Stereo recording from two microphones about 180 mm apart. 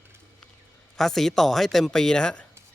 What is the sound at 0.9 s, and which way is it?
Speech, centre (ahead or behind).